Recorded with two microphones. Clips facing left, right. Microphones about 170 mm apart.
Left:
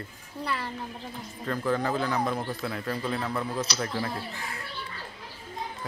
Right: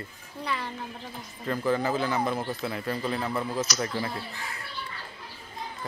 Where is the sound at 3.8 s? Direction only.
Centre (ahead or behind).